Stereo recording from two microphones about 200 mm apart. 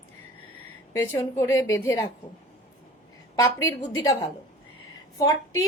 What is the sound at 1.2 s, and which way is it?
Speech, 15° left (ahead or behind).